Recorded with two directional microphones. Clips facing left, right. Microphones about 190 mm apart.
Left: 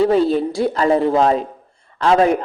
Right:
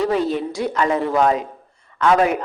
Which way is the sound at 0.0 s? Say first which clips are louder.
Left 5 dB; 30° left (ahead or behind).